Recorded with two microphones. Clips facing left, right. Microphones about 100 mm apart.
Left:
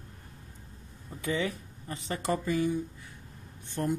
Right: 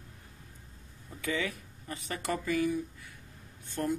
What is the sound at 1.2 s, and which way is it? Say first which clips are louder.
Speech: left 3 dB; 30° left (ahead or behind).